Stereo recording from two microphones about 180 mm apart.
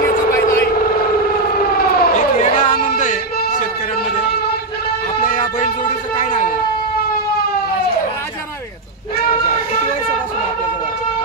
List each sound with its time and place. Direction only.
0.3 s vehicle: 15° left (ahead or behind)
2.0 s siren: 45° left (ahead or behind)
3.0 s music: 45° left (ahead or behind)
5.2 s a sound: 45° left (ahead or behind)